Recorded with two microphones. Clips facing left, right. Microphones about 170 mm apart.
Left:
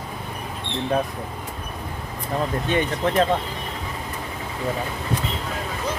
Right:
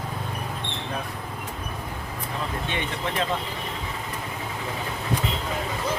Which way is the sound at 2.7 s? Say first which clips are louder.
Left 11 dB; 40° left (ahead or behind).